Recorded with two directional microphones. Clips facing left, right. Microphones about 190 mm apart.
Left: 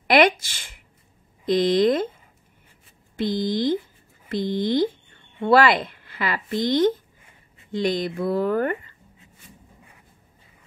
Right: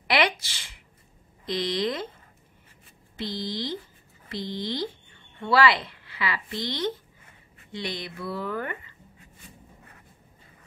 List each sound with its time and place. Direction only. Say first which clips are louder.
0.1 s a sound: left 7 dB; 50° left (ahead or behind)
1.4 s a woman's voice: left 9 dB; 50° left (ahead or behind)
3.2 s a woman's voice: left 9 dB; 50° left (ahead or behind)